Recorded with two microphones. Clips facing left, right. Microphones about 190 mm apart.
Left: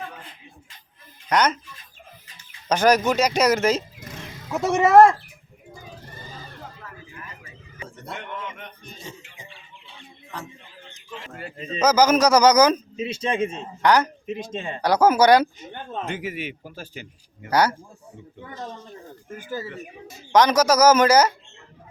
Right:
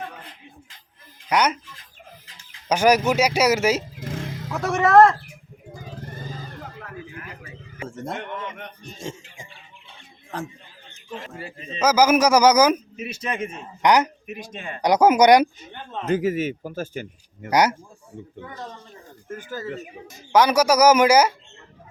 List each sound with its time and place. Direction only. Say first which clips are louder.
1.3 s speech: even; 10° right (ahead or behind)
2.6 s speech: even; 10° right (ahead or behind)
4.5 s speech: left 1 dB; 20° left (ahead or behind)
6.7 s a sound: right 5 dB; 65° right (ahead or behind)
7.9 s speech: right 5 dB; 45° right (ahead or behind)
11.3 s speech: left 3 dB; 10° right (ahead or behind)
13.0 s speech: left 4 dB; 30° left (ahead or behind)
13.8 s speech: right 1 dB; 15° right (ahead or behind)
14.3 s speech: left 5 dB; 25° left (ahead or behind)
14.8 s speech: right 2 dB; 15° right (ahead or behind)
16.0 s speech: right 13 dB; 40° right (ahead or behind)
17.5 s speech: right 1 dB; 20° right (ahead or behind)
19.4 s speech: left 1 dB; 10° left (ahead or behind)
20.3 s speech: even; 10° right (ahead or behind)